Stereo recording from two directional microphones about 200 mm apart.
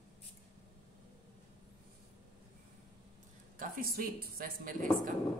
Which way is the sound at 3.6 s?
45° right (ahead or behind).